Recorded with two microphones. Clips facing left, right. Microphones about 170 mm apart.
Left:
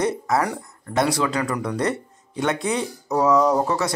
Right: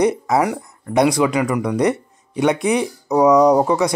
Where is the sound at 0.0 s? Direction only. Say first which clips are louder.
Right 5 dB; 15° right (ahead or behind).